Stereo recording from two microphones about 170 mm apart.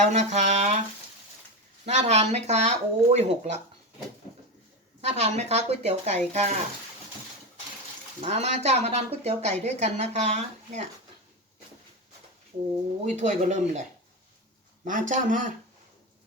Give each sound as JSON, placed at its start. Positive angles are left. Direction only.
{"t": 0.0, "sound": "frying", "side_deg": -45}
{"t": 1.8, "sound": "a woman's voice", "side_deg": -40}
{"t": 4.9, "sound": "a woman's voice", "side_deg": -40}
{"t": 8.2, "sound": "a woman's voice", "side_deg": -40}
{"t": 13.1, "sound": "frying", "side_deg": -45}
{"t": 14.8, "sound": "frying", "side_deg": -50}